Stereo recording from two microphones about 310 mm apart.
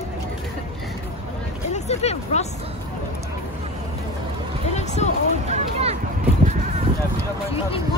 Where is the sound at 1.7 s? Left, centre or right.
Left.